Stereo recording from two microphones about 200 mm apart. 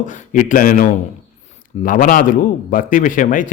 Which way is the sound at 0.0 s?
40° left (ahead or behind).